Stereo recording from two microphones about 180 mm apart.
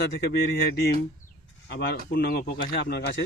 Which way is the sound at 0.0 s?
60° left (ahead or behind).